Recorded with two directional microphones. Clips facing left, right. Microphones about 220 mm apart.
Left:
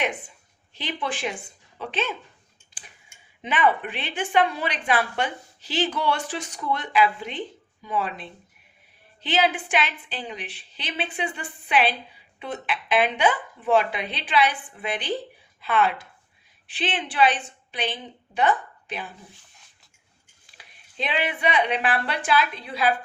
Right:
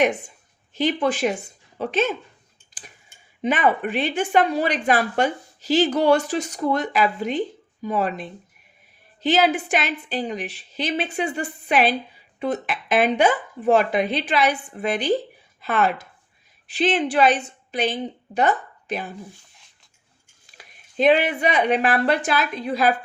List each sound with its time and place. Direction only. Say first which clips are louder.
0.7 s a woman's voice: right 9 dB; 45° right (ahead or behind)
20.6 s speech: right 11 dB; 45° right (ahead or behind)